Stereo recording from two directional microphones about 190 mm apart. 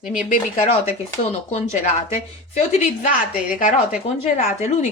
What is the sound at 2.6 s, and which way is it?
Speech, 40° left (ahead or behind).